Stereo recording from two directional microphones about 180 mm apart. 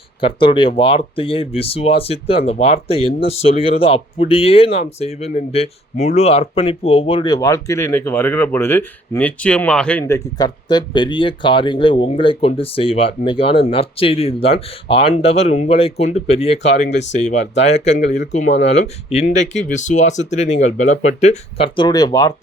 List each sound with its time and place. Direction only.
0.2 s speech: 30° left (ahead or behind); by 10.2 s 5° left (ahead or behind)
10.2 s speech: 20° left (ahead or behind); by 21.7 s 40° left (ahead or behind)
21.8 s speech: 25° left (ahead or behind)